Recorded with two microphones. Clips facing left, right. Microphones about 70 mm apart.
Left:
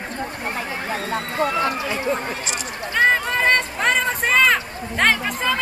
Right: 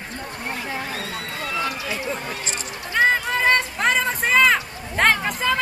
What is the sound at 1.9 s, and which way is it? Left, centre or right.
Speech, left.